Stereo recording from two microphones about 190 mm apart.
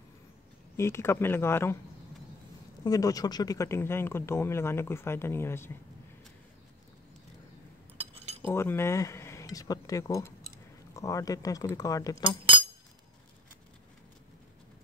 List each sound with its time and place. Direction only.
0.7 s speech: 15° left (ahead or behind)
2.8 s speech: 20° left (ahead or behind)
8.0 s cutlery: 30° right (ahead or behind)
8.4 s speech: 10° left (ahead or behind)